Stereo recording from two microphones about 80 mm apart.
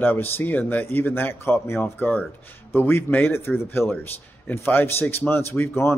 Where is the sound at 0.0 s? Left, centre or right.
Left.